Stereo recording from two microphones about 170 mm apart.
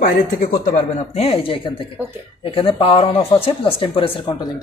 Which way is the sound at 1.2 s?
35° left (ahead or behind).